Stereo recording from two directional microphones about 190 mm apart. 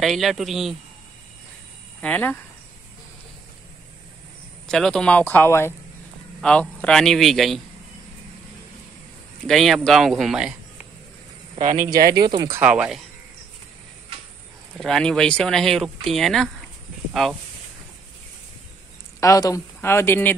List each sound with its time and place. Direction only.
0.0 s speech: centre (ahead or behind)
2.0 s speech: 5° left (ahead or behind)
4.6 s speech: 5° left (ahead or behind)
9.5 s speech: centre (ahead or behind)
11.5 s speech: 40° right (ahead or behind)
12.2 s speech: 20° right (ahead or behind)
12.5 s speech: 5° right (ahead or behind)
14.8 s speech: 5° left (ahead or behind)
19.1 s speech: 15° left (ahead or behind)